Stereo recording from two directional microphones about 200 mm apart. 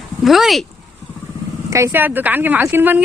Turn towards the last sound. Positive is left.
turn(degrees=-10)  # may be behind; listen again after turning